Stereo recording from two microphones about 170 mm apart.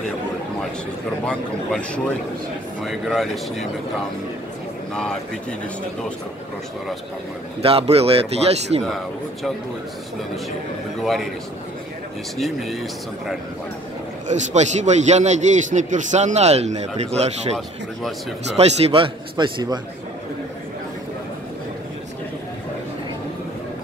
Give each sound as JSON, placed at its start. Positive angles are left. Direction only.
{"t": 1.2, "sound": "a man's voice", "side_deg": 5}
{"t": 7.6, "sound": "speech", "side_deg": -35}
{"t": 8.8, "sound": "a man's voice", "side_deg": 0}
{"t": 11.0, "sound": "a man's voice", "side_deg": 0}
{"t": 12.4, "sound": "a man's voice", "side_deg": 0}
{"t": 14.2, "sound": "a man's voice", "side_deg": -45}
{"t": 18.6, "sound": "a man's voice", "side_deg": -35}